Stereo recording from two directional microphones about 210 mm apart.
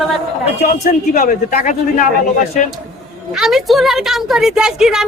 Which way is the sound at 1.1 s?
40° left (ahead or behind).